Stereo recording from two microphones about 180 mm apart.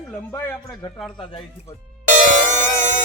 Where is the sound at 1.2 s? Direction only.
30° left (ahead or behind).